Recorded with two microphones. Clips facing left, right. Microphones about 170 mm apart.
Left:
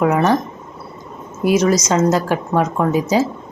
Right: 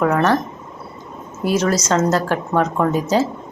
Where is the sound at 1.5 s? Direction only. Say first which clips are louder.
Left 3 dB; 10° left (ahead or behind).